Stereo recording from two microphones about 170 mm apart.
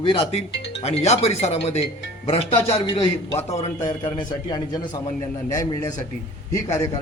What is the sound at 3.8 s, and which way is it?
A man's voice, 25° left (ahead or behind).